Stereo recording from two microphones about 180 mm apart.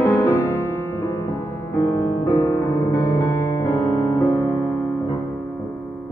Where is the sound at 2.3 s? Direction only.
20° left (ahead or behind).